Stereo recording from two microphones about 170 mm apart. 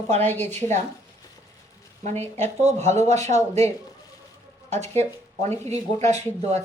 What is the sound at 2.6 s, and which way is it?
Speech, 40° right (ahead or behind).